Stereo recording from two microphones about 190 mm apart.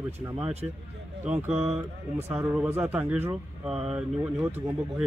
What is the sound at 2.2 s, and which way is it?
Speech, 10° right (ahead or behind).